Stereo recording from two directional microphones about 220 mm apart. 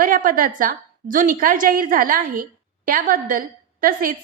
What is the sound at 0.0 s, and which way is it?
A woman's voice, 40° right (ahead or behind).